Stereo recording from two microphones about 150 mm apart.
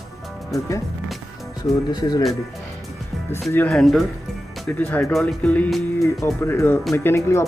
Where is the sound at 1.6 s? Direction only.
30° left (ahead or behind).